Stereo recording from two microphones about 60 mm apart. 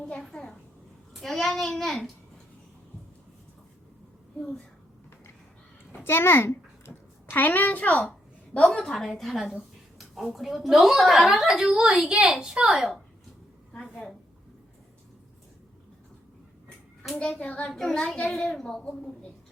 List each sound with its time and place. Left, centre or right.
0.0 s a child's voice: centre
4.4 s speech: centre
5.9 s a sound: left
8.5 s a woman's voice: centre
17.2 s a child's voice: centre